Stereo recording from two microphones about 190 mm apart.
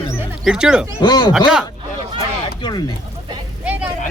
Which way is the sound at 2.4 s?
25° left (ahead or behind).